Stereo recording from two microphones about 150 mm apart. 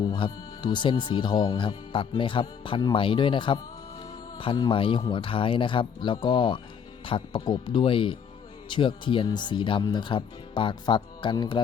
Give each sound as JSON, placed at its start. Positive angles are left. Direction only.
{"t": 0.0, "sound": "speech", "side_deg": 30}